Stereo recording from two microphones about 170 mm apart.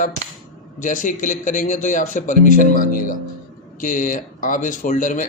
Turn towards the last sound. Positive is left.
turn(degrees=50)  # may be behind; listen again after turning